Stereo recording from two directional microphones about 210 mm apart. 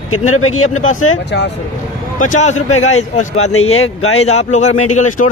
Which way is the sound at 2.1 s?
35° left (ahead or behind).